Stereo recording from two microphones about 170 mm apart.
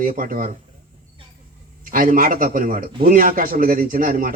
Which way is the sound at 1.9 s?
55° right (ahead or behind).